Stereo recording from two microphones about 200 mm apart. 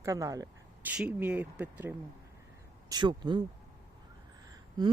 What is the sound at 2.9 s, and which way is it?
Speech, 20° right (ahead or behind).